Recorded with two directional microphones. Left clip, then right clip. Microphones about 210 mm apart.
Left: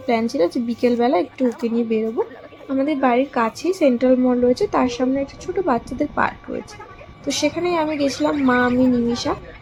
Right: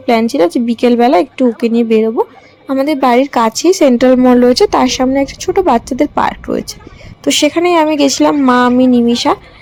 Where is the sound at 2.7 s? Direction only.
60° right (ahead or behind).